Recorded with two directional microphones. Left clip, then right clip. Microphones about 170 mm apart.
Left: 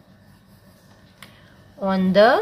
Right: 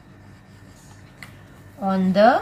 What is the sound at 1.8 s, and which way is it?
Speech, 55° left (ahead or behind).